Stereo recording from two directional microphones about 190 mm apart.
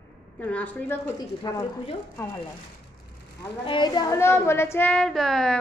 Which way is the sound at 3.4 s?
20° left (ahead or behind).